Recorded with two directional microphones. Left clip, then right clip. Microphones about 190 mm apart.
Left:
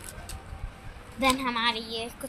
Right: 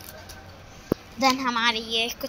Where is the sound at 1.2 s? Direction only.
5° right (ahead or behind).